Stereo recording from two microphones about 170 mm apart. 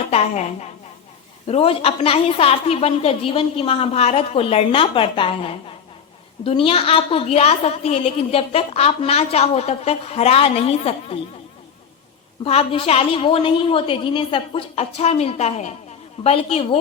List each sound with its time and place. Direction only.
0.1 s a woman's voice: 40° left (ahead or behind)
12.5 s a woman's voice: 35° left (ahead or behind)